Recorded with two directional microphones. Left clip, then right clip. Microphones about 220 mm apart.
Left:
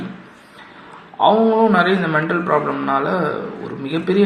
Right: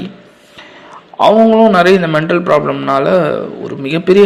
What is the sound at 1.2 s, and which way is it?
A man's voice, 40° right (ahead or behind).